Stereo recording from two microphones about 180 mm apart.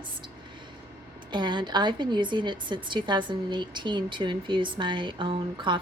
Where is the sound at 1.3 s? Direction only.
25° right (ahead or behind).